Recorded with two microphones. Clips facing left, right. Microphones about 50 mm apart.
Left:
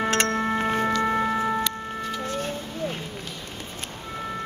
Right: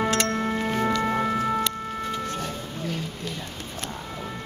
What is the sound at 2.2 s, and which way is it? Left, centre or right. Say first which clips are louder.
Music: left 1 dB; left.